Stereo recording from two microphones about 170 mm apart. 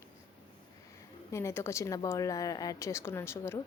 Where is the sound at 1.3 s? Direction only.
15° left (ahead or behind).